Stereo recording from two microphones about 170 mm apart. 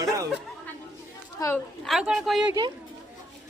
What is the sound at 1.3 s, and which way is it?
Speech, 15° left (ahead or behind).